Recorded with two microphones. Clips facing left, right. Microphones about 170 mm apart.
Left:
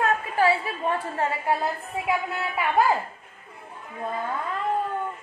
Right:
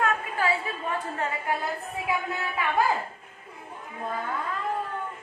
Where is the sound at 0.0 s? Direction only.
30° left (ahead or behind).